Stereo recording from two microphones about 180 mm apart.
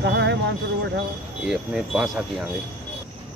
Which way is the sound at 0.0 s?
75° right (ahead or behind).